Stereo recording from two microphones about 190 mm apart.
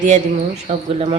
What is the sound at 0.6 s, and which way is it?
Speech, 30° right (ahead or behind).